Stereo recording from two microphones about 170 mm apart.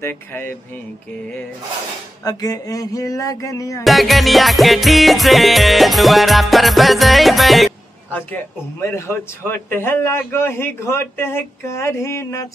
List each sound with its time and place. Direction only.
0.0 s a man's voice: 15° left (ahead or behind)
2.2 s music: 20° left (ahead or behind)
3.8 s music: centre (ahead or behind)
8.2 s a man's voice: 10° left (ahead or behind)